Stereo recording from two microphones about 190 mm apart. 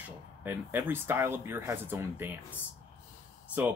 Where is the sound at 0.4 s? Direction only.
10° right (ahead or behind).